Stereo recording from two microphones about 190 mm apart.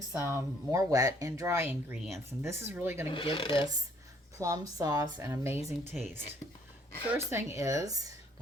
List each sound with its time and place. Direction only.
0.1 s speech: 15° right (ahead or behind)
3.1 s speech: 25° left (ahead or behind)
4.4 s speech: 15° right (ahead or behind)
5.8 s speech: 35° left (ahead or behind)
7.1 s speech: 15° right (ahead or behind)